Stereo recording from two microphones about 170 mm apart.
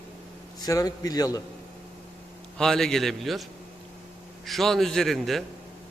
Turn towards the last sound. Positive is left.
turn(degrees=0)  # may be behind; listen again after turning